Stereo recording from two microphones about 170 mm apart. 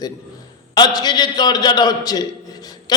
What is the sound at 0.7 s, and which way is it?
A man's voice, 25° left (ahead or behind).